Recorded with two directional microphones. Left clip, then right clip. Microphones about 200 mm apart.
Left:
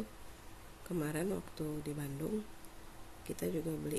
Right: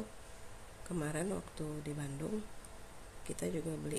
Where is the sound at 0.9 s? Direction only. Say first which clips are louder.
Left 1 dB; centre (ahead or behind).